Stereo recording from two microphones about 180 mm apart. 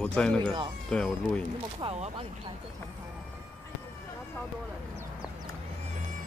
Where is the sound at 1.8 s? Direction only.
30° right (ahead or behind).